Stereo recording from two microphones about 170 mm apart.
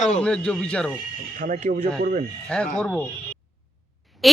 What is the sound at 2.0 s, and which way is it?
Speech, 60° right (ahead or behind).